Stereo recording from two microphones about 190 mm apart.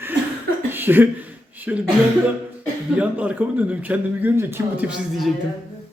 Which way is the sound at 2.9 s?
5° right (ahead or behind).